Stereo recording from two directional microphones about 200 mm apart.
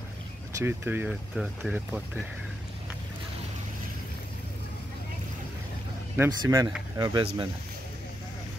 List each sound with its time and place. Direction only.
0.6 s speech: 10° right (ahead or behind)
6.1 s speech: 15° right (ahead or behind)